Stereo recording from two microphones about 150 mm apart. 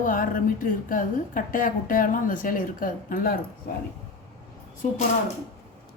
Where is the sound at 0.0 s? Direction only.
65° left (ahead or behind).